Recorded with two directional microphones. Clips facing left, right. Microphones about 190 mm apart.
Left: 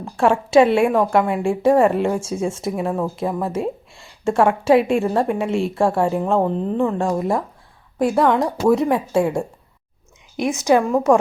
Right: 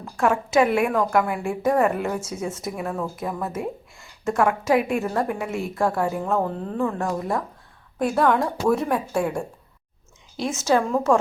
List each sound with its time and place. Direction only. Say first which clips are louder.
0.0 s a woman's voice: left 4 dB; 30° left (ahead or behind); by 11.2 s 15° left (ahead or behind)